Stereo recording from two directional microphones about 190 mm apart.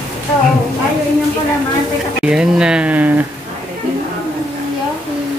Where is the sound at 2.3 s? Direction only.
5° right (ahead or behind).